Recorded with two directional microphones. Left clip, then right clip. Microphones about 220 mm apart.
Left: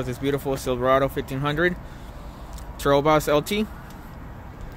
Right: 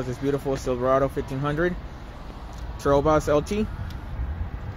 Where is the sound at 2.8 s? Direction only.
5° left (ahead or behind).